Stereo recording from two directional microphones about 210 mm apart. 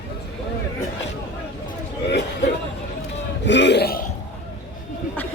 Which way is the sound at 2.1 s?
55° left (ahead or behind).